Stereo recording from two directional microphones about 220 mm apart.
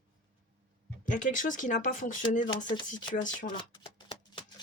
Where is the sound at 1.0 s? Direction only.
35° left (ahead or behind).